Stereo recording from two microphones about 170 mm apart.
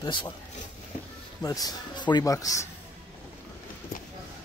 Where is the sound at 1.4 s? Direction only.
20° left (ahead or behind).